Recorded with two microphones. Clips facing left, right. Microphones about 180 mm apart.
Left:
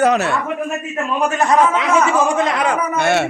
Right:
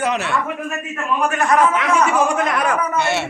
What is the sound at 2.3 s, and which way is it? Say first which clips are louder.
Speech: left 2 dB; 25° left (ahead or behind).